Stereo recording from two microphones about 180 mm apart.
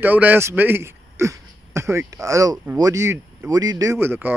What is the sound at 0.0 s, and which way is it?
A man's voice, 10° right (ahead or behind).